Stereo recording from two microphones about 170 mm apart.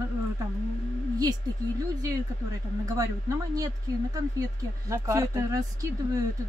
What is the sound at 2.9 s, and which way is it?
Speech, 20° right (ahead or behind).